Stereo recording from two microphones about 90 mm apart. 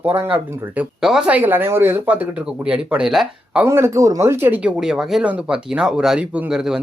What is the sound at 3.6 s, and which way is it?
Speech, 30° right (ahead or behind).